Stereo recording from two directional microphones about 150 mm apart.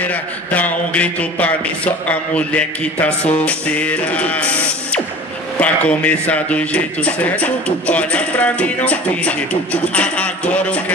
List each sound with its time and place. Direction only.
0.0 s speech: 10° left (ahead or behind)